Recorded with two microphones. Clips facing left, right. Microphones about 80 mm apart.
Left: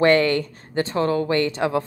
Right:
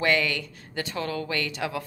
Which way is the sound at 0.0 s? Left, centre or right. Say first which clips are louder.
Left 8 dB; left.